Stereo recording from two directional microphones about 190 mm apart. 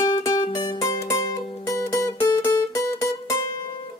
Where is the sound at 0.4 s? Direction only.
25° left (ahead or behind).